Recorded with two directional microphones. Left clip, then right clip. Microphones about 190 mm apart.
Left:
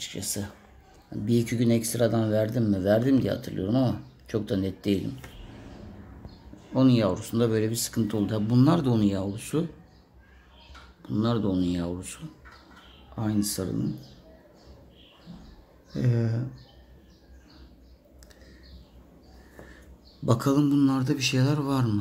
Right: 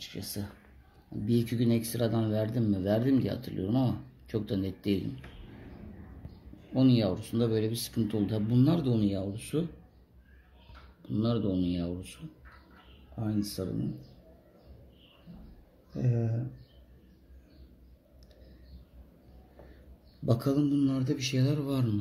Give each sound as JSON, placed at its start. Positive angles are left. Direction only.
{"t": 0.0, "sound": "speech", "side_deg": 10}
{"t": 6.7, "sound": "speech", "side_deg": 5}
{"t": 11.0, "sound": "speech", "side_deg": 0}
{"t": 13.1, "sound": "speech", "side_deg": 10}
{"t": 15.9, "sound": "speech", "side_deg": 15}
{"t": 20.2, "sound": "speech", "side_deg": 10}